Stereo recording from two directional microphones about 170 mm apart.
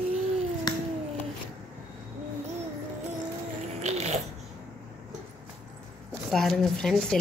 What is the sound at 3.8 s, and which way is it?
Babbling, 40° right (ahead or behind).